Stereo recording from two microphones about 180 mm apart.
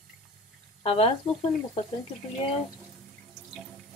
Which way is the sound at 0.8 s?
35° left (ahead or behind).